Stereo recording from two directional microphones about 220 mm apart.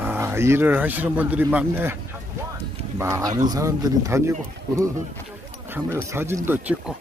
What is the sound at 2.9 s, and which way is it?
Speech, 15° right (ahead or behind).